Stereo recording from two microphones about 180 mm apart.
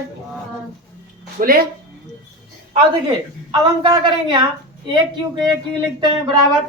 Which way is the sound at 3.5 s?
25° right (ahead or behind).